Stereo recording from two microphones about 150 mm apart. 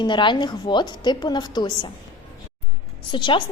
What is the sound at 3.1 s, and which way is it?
Speech, 30° left (ahead or behind).